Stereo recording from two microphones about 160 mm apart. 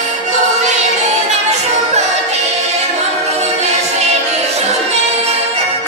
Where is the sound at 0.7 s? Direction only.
45° right (ahead or behind).